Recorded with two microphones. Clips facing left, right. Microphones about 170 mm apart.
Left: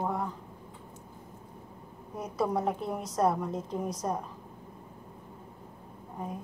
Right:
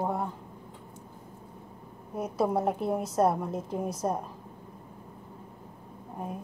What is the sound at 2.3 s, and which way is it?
Speech, 25° right (ahead or behind).